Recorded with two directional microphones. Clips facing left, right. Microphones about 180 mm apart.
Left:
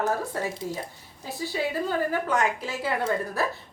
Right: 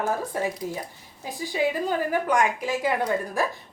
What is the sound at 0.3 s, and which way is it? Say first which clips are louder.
Speech: right 3 dB; 15° right (ahead or behind).